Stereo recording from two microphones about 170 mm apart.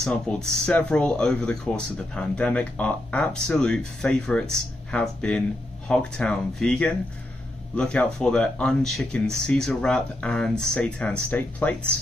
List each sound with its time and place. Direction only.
0.0 s speech: 5° left (ahead or behind)